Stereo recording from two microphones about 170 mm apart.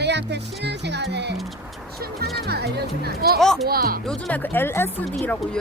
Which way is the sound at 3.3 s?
Centre (ahead or behind).